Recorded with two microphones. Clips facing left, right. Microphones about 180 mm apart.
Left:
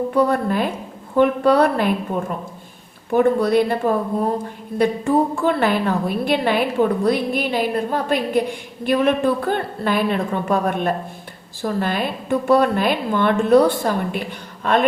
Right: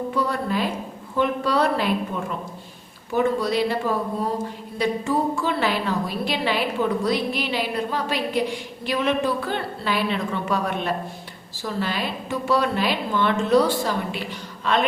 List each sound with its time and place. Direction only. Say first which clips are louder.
0.1 s a woman's voice: left 7 dB; 55° left (ahead or behind)
3.1 s a woman's voice: left 6 dB; 55° left (ahead or behind)